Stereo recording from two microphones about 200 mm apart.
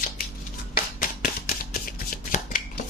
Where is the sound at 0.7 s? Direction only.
45° left (ahead or behind).